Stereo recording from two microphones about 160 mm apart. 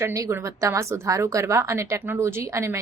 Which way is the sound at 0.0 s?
15° right (ahead or behind).